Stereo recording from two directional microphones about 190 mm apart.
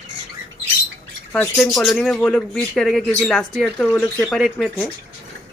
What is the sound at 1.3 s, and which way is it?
Speech, 5° left (ahead or behind).